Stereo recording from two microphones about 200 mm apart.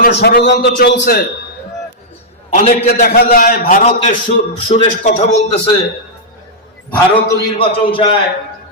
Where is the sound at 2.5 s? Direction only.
40° left (ahead or behind).